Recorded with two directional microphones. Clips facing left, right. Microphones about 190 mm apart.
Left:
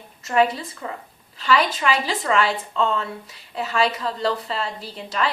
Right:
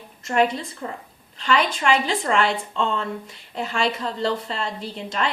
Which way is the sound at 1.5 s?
5° left (ahead or behind).